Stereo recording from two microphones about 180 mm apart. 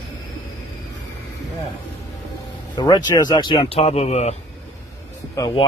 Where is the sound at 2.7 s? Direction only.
25° left (ahead or behind).